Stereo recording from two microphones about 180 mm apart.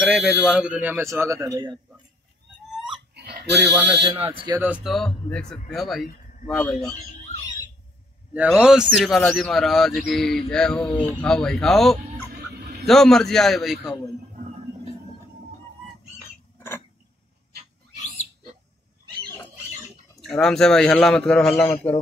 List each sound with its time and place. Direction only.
0.0 s speech: 5° right (ahead or behind); by 1.8 s 20° right (ahead or behind)
3.2 s chicken: 65° right (ahead or behind)
3.7 s speech: 30° right (ahead or behind)
4.6 s bird: 5° right (ahead or behind)
6.5 s speech: 5° left (ahead or behind)
8.3 s bird: 5° right (ahead or behind)
14.3 s music: 40° right (ahead or behind)
16.5 s a sound: 15° left (ahead or behind)
20.2 s bird: 5° left (ahead or behind)
21.5 s speech: 15° left (ahead or behind)